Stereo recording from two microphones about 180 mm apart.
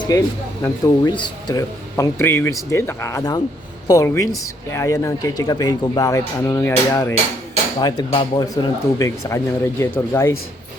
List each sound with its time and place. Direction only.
0.1 s speech: 20° left (ahead or behind)